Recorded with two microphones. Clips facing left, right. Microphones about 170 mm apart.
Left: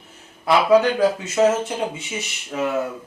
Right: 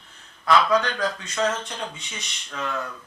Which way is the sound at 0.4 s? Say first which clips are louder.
Left 5 dB; 10° left (ahead or behind).